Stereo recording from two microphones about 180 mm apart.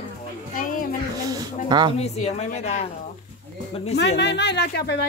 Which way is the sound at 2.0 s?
35° left (ahead or behind).